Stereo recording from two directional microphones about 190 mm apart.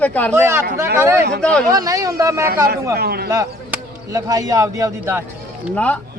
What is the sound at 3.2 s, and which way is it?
Speech, 15° right (ahead or behind).